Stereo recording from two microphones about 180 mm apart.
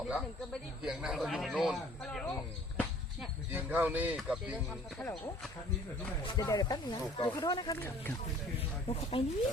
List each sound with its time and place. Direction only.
0.1 s a man's voice: centre (ahead or behind)
3.2 s speech: 10° right (ahead or behind)
4.9 s speech: 10° left (ahead or behind)
6.2 s speech: 20° left (ahead or behind)
7.8 s speech: 10° left (ahead or behind)
8.9 s speech: 35° left (ahead or behind)